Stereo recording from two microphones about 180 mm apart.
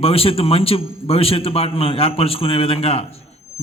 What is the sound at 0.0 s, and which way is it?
A man's voice, 30° left (ahead or behind).